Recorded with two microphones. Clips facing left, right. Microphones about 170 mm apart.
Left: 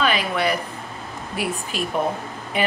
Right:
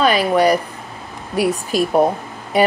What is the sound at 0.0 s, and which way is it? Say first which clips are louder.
Speech: right 7 dB; 40° right (ahead or behind).